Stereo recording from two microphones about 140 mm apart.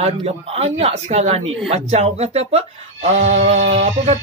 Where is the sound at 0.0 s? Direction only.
45° right (ahead or behind).